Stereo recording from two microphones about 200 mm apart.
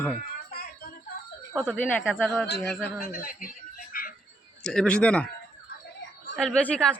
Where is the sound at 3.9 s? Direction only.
45° left (ahead or behind).